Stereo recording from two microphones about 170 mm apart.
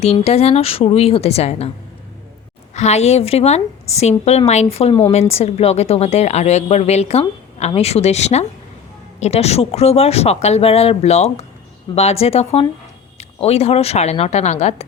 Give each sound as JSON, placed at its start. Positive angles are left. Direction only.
{"t": 0.0, "sound": "a woman's voice", "side_deg": 35}
{"t": 2.7, "sound": "a woman's voice", "side_deg": 40}